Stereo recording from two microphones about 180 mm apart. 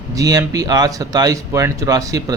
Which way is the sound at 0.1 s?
20° right (ahead or behind).